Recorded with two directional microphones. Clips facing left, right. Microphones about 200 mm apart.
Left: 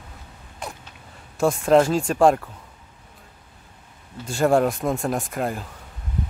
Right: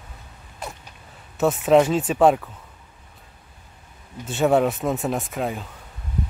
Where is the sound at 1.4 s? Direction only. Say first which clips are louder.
Even; 5° right (ahead or behind).